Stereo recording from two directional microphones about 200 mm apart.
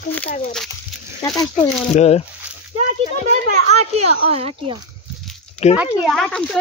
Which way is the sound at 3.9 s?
30° right (ahead or behind).